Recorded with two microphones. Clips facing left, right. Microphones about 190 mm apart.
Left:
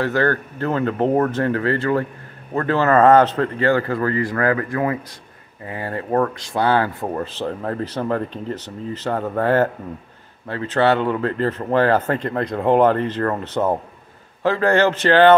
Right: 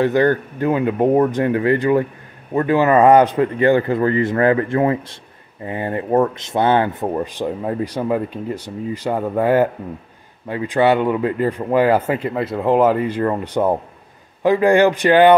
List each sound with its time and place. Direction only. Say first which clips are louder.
0.0 s a man's voice: right 4 dB; 15° right (ahead or behind)